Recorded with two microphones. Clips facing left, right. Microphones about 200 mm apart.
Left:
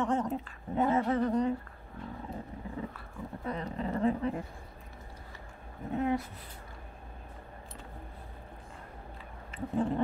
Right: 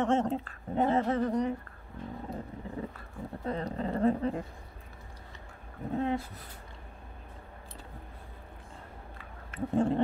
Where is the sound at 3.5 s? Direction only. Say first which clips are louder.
Right 2 dB; 35° right (ahead or behind).